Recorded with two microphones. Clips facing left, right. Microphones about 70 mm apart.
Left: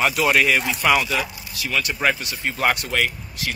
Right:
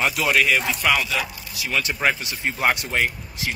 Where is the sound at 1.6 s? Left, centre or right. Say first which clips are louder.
Left 1 dB; right.